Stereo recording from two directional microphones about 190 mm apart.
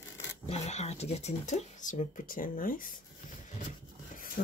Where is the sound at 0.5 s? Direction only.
35° left (ahead or behind).